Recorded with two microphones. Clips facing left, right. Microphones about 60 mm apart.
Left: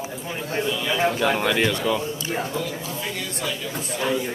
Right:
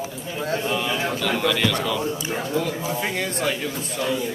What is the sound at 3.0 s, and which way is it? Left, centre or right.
Speech, right.